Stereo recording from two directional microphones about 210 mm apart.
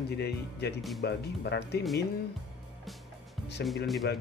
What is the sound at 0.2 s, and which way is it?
Speech, 50° left (ahead or behind).